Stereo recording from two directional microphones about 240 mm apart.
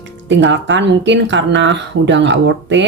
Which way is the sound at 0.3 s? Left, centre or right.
Right.